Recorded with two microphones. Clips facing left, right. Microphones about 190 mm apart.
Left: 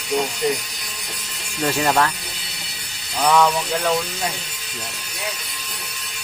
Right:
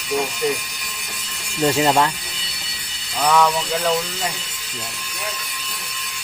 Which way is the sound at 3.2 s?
Centre (ahead or behind).